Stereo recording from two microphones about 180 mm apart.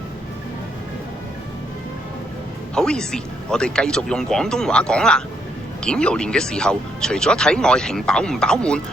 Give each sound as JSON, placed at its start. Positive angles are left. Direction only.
{"t": 2.7, "sound": "speech", "side_deg": 5}